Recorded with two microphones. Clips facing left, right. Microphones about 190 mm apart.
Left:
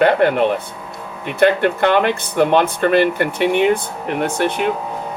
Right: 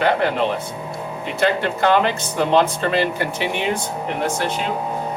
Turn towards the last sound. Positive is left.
turn(degrees=60)  # may be behind; listen again after turning